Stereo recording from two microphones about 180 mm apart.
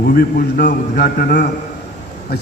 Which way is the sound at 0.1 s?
55° left (ahead or behind).